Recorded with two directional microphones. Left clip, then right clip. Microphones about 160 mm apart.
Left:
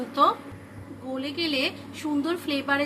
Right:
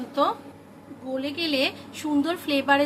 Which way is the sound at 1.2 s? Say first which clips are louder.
Right 2 dB; 20° right (ahead or behind).